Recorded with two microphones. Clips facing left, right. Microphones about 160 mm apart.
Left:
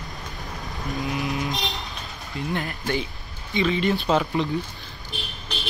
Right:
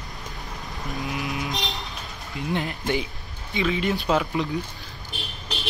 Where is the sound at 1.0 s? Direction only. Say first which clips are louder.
Left 3 dB; centre (ahead or behind).